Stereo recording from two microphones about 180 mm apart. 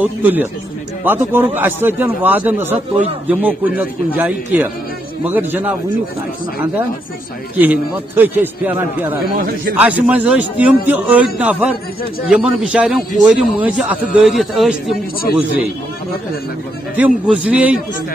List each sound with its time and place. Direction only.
0.0 s a man's voice: 10° right (ahead or behind)
16.9 s a man's voice: 5° right (ahead or behind)